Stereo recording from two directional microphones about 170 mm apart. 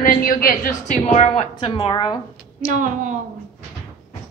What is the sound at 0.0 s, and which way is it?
A woman's voice, 55° left (ahead or behind).